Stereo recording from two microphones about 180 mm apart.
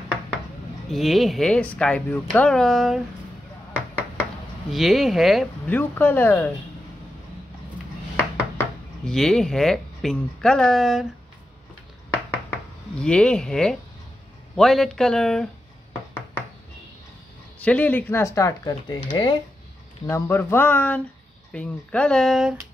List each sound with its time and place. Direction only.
0.8 s speech: centre (ahead or behind)
4.6 s speech: centre (ahead or behind)
5.7 s speech: 10° left (ahead or behind)
8.2 s speech: 5° left (ahead or behind)
13.0 s speech: 5° left (ahead or behind)
17.6 s speech: 10° left (ahead or behind); by 19.3 s 25° left (ahead or behind)
20.1 s speech: 15° left (ahead or behind); by 22.6 s centre (ahead or behind)